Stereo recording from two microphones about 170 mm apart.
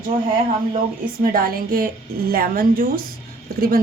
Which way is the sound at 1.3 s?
60° right (ahead or behind).